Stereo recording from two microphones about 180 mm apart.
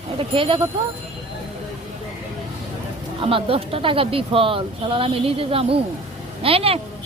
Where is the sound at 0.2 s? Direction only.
30° right (ahead or behind).